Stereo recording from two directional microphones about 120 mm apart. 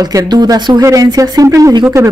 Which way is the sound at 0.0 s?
30° right (ahead or behind).